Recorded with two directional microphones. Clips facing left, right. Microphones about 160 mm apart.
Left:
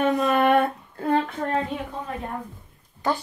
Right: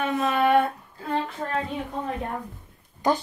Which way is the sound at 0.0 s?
45° left (ahead or behind).